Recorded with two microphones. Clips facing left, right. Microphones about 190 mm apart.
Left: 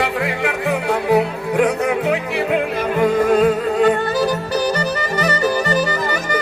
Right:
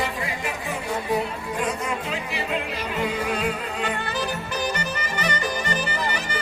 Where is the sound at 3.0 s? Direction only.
50° left (ahead or behind).